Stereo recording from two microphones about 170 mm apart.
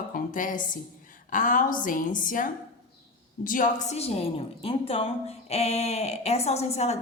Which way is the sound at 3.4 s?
50° left (ahead or behind).